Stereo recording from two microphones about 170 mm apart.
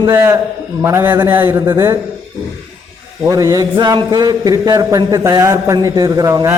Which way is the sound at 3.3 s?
20° right (ahead or behind).